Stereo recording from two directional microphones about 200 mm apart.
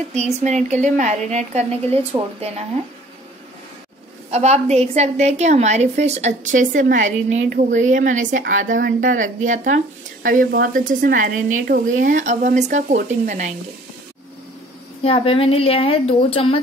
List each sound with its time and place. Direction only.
0.1 s a woman's voice: 35° right (ahead or behind)
4.3 s a woman's voice: 35° right (ahead or behind)
15.0 s a woman's voice: 30° left (ahead or behind)